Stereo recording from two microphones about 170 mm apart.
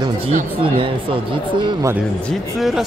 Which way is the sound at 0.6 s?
30° right (ahead or behind).